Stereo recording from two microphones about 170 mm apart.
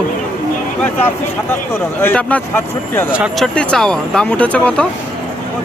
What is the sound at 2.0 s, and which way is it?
Speech, 10° left (ahead or behind).